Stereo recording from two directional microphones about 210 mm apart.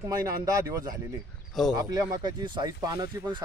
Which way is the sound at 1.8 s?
20° right (ahead or behind).